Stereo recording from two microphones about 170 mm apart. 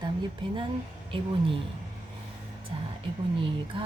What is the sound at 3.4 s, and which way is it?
Speech, 30° right (ahead or behind).